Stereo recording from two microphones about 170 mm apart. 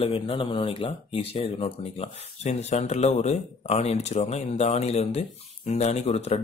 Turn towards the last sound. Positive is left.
turn(degrees=40)  # may be behind; listen again after turning